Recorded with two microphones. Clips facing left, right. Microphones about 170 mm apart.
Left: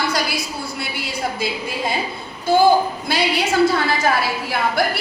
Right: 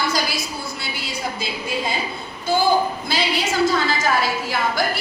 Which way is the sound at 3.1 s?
60° left (ahead or behind).